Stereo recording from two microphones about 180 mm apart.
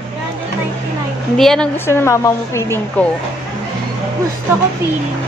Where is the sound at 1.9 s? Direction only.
15° left (ahead or behind).